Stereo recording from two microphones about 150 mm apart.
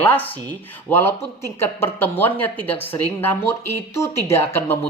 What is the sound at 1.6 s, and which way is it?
Speech, 15° left (ahead or behind).